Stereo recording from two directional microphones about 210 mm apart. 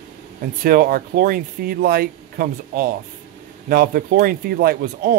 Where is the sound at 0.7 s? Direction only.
45° right (ahead or behind).